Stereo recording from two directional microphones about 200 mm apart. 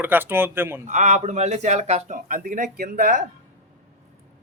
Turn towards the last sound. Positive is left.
turn(degrees=-45)  # may be behind; listen again after turning